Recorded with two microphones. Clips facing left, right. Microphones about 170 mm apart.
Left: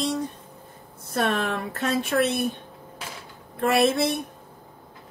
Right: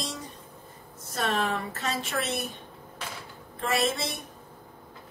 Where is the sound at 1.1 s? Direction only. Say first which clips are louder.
Left 3 dB; 60° left (ahead or behind).